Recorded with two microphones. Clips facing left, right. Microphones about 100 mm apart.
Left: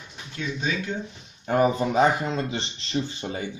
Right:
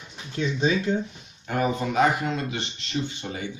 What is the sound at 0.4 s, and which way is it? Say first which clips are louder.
Speech: right 5 dB; 30° right (ahead or behind).